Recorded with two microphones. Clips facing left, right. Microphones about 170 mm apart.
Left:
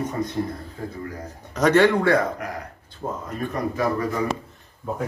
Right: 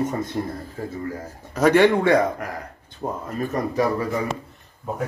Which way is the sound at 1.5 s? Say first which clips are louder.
Right 1 dB; 10° right (ahead or behind).